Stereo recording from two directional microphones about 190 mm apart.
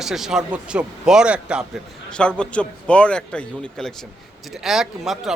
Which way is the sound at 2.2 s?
5° left (ahead or behind).